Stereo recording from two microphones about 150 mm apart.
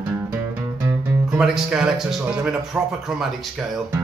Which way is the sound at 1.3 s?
5° right (ahead or behind).